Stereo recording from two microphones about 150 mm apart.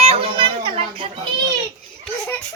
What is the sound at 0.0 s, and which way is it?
Children playing, 40° right (ahead or behind).